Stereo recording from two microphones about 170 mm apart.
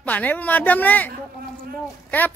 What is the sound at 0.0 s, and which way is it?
Speech, 10° left (ahead or behind).